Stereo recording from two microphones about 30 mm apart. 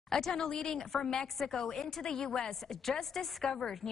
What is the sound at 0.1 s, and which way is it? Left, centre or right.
A woman's voice, centre.